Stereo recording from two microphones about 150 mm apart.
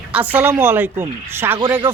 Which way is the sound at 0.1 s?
10° right (ahead or behind).